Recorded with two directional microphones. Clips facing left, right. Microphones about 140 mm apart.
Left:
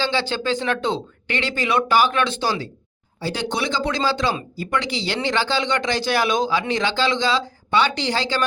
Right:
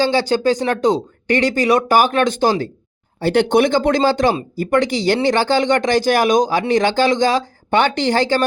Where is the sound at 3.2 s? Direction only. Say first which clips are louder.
Right 11 dB; 60° right (ahead or behind).